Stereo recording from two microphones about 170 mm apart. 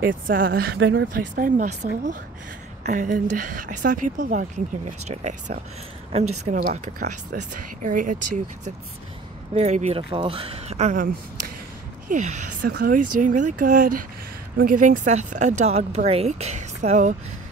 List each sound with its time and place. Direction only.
0.0 s speech: 55° right (ahead or behind); by 1.2 s 80° right
1.2 s speech: 50° right (ahead or behind)
2.8 s speech: 45° right (ahead or behind)
9.5 s speech: 40° right (ahead or behind)
12.6 s speech: 60° right (ahead or behind); by 17.1 s 45° right (ahead or behind)